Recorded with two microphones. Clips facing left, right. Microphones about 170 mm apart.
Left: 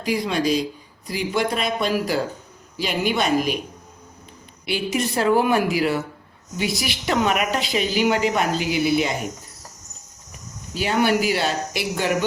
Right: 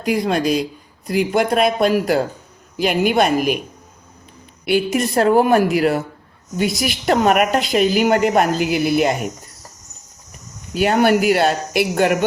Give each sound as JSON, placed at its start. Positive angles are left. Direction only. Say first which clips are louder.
{"t": 0.0, "sound": "a woman's voice", "louder": "right 4 dB", "side_deg": -50}
{"t": 4.6, "sound": "a woman's voice", "louder": "right 6 dB", "side_deg": -50}
{"t": 10.8, "sound": "speech", "louder": "right 5 dB", "side_deg": -55}